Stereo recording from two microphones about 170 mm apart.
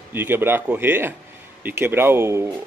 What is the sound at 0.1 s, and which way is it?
A man's voice, 15° right (ahead or behind).